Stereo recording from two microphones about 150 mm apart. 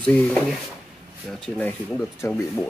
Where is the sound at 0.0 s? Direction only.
10° left (ahead or behind).